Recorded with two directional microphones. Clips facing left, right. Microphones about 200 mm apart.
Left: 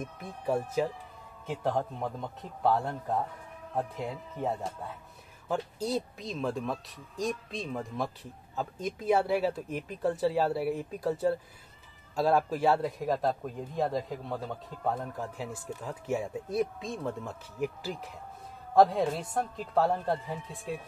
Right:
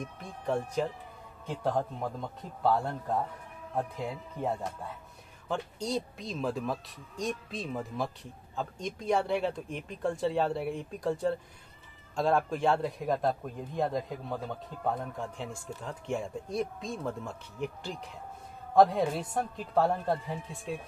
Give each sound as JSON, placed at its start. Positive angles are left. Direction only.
{"t": 0.0, "sound": "speech", "side_deg": 5}
{"t": 5.5, "sound": "speech", "side_deg": 5}